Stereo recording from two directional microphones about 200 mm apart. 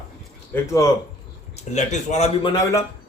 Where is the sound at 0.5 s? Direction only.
15° left (ahead or behind).